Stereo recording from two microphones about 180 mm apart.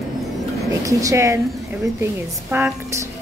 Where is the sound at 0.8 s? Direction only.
15° right (ahead or behind).